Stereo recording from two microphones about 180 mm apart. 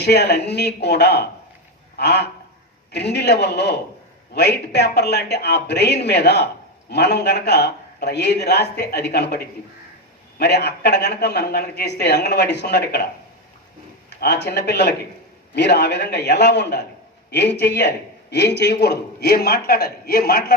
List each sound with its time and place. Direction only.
0.0 s a man's voice: 65° left (ahead or behind)
14.1 s a man's voice: 70° left (ahead or behind)